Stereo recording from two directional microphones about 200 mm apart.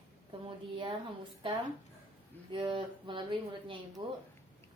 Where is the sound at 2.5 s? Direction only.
25° right (ahead or behind).